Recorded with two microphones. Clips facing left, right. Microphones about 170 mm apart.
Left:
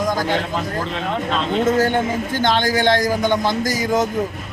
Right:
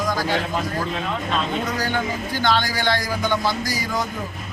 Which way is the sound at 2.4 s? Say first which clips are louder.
Left 4 dB; 20° left (ahead or behind).